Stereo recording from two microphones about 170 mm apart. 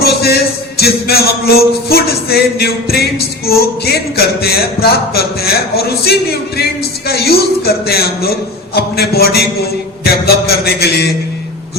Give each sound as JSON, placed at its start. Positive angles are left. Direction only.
{"t": 0.0, "sound": "music", "side_deg": 70}